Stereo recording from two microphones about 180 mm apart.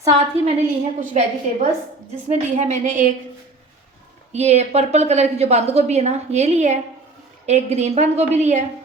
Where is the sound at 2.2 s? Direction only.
40° right (ahead or behind).